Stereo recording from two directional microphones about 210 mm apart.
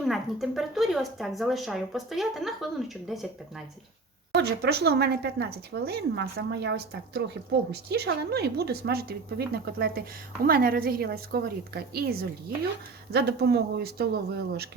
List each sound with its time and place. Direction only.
0.0 s speech: centre (ahead or behind)
4.4 s a woman's voice: 50° right (ahead or behind)